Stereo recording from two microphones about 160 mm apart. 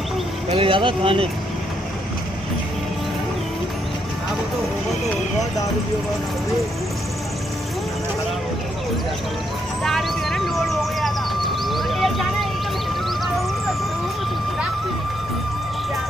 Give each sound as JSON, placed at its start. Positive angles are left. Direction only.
{"t": 0.5, "sound": "speech", "side_deg": -35}
{"t": 9.8, "sound": "music", "side_deg": 0}